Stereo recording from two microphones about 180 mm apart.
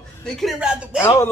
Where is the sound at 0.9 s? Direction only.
15° left (ahead or behind).